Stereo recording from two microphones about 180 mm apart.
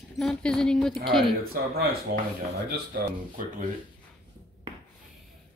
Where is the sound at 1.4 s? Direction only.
55° right (ahead or behind).